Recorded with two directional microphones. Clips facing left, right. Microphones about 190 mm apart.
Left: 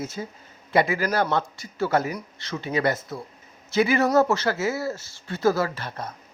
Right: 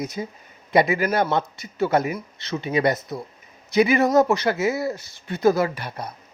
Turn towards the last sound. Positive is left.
turn(degrees=-10)  # may be behind; listen again after turning